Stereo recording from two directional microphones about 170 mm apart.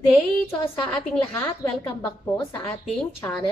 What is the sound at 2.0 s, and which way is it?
A woman's voice, 25° left (ahead or behind).